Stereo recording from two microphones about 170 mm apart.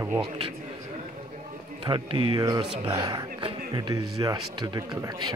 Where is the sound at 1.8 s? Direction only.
30° right (ahead or behind).